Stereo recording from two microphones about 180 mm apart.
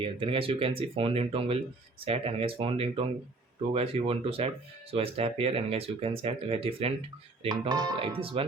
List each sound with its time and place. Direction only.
0.0 s speech: 30° right (ahead or behind)
7.4 s speech: 25° right (ahead or behind)